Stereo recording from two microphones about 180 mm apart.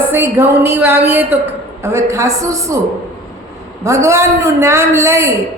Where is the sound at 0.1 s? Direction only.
10° right (ahead or behind).